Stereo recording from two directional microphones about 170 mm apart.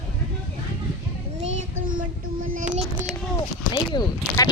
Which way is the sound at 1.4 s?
55° right (ahead or behind).